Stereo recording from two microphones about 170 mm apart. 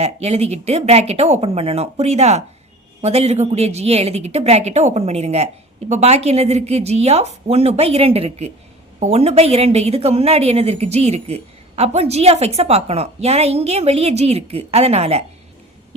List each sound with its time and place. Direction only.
0.0 s a woman's voice: 40° right (ahead or behind)